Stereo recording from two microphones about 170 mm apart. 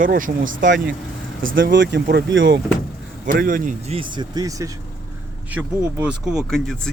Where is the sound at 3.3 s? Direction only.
55° right (ahead or behind).